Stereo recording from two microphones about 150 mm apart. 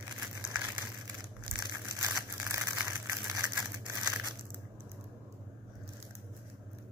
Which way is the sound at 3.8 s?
20° right (ahead or behind).